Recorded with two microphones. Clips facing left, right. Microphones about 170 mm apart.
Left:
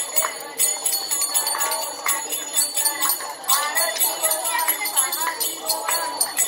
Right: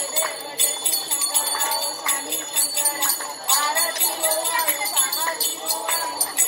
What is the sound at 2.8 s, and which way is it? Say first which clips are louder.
Jingle bell: right 1 dB; 25° right (ahead or behind).